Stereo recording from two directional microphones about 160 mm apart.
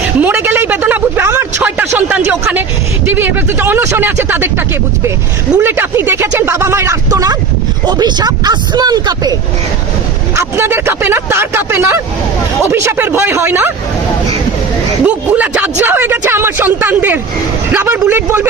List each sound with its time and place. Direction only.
0.2 s a sound: 10° right (ahead or behind)
3.1 s speech: 10° right (ahead or behind)
10.3 s speech: 15° right (ahead or behind)
15.0 s speech: 10° right (ahead or behind)